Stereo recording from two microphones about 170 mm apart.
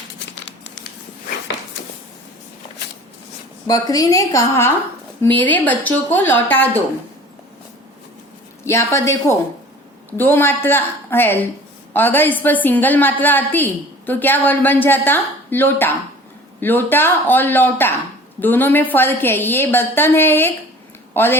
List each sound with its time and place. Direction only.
0.4 s crumpling: 90° left
3.7 s a woman's voice: 20° left (ahead or behind)
8.6 s a woman's voice: 15° left (ahead or behind)